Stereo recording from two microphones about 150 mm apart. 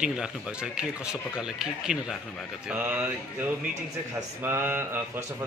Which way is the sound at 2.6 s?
10° right (ahead or behind).